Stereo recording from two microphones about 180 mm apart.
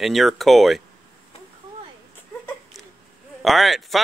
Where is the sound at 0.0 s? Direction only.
Centre (ahead or behind).